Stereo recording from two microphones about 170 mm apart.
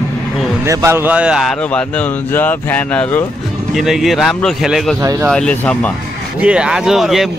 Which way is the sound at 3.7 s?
Centre (ahead or behind).